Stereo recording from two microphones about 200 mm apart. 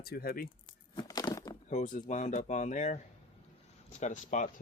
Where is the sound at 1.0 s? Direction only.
20° left (ahead or behind).